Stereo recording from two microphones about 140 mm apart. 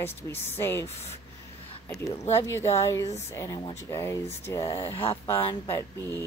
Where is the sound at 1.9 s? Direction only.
20° left (ahead or behind).